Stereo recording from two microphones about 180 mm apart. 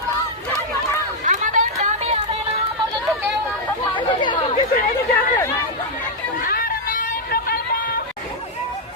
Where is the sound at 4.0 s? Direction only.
25° left (ahead or behind).